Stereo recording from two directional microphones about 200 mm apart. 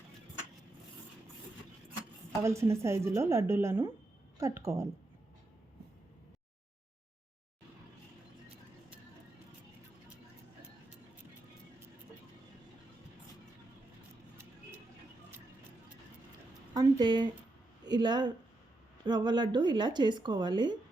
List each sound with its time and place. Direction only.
2.4 s a woman's voice: 15° right (ahead or behind)
16.7 s a sound: 20° right (ahead or behind)
17.8 s a woman's voice: 20° right (ahead or behind)